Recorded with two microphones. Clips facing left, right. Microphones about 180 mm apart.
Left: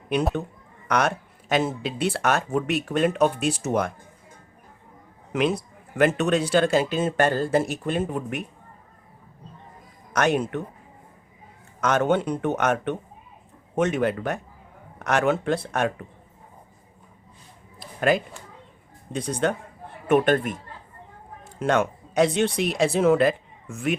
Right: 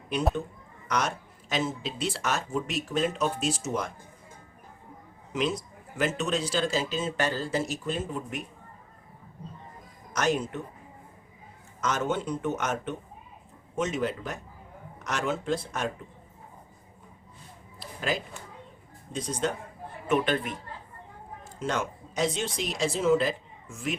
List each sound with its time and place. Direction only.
0.9 s speech: 60° left (ahead or behind)
5.3 s speech: 60° left (ahead or behind)
10.1 s a man's voice: 60° left (ahead or behind)
11.8 s speech: 65° left (ahead or behind)
17.7 s a sound: 60° left (ahead or behind)
19.1 s speech: 60° left (ahead or behind)
20.1 s a man's voice: 50° left (ahead or behind)
21.6 s speech: 60° left (ahead or behind)